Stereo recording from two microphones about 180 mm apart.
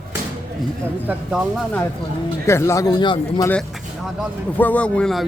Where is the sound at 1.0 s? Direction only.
5° right (ahead or behind).